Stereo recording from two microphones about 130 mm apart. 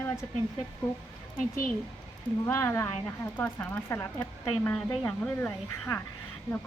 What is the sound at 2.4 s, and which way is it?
Speech, 20° left (ahead or behind).